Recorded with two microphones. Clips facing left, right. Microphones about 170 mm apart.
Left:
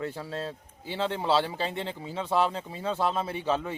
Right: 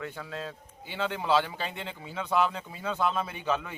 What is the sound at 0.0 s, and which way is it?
A man's voice, 30° left (ahead or behind).